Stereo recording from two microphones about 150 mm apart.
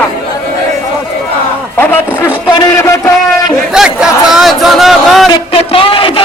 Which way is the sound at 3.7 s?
5° right (ahead or behind).